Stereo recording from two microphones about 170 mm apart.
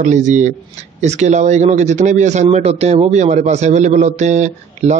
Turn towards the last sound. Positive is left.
turn(degrees=-45)  # may be behind; listen again after turning